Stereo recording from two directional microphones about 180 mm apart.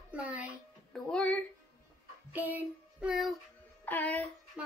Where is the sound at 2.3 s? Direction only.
10° right (ahead or behind).